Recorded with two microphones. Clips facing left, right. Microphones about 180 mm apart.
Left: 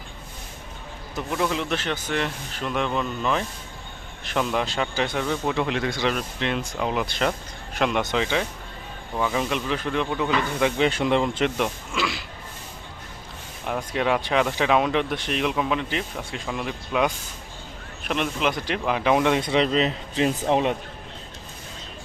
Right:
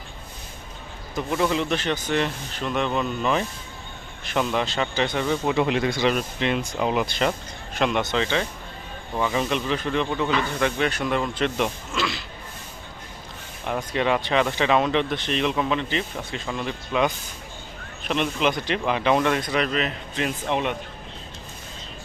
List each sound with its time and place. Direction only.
1.1 s speech: centre (ahead or behind)
10.6 s speech: 20° left (ahead or behind)
11.5 s speech: 5° left (ahead or behind)
13.9 s speech: 5° left (ahead or behind); by 20.7 s 35° left (ahead or behind)